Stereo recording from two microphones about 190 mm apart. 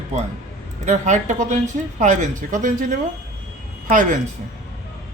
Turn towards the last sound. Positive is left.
turn(degrees=-40)  # may be behind; listen again after turning